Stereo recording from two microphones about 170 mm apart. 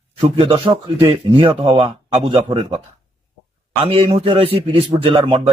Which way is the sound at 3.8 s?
35° right (ahead or behind).